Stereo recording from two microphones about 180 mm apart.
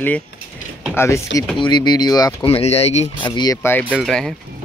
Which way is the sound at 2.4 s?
35° left (ahead or behind).